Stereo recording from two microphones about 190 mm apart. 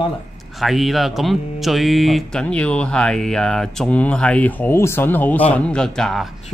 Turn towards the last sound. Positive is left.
turn(degrees=0)  # may be behind; listen again after turning